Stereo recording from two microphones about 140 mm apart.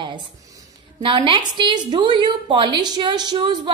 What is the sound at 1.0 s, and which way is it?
A woman's voice, 35° right (ahead or behind).